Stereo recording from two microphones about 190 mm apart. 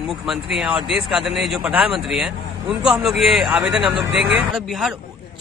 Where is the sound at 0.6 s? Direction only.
5° right (ahead or behind).